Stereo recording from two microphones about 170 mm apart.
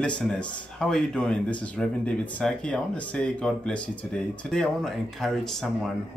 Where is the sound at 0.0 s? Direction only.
5° left (ahead or behind).